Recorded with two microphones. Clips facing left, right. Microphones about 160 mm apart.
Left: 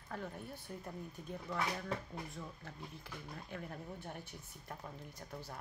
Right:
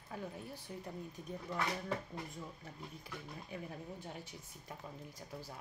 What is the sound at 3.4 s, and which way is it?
Speech, 5° right (ahead or behind).